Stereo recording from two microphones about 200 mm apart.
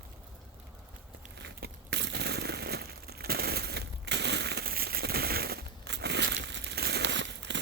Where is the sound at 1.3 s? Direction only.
60° right (ahead or behind).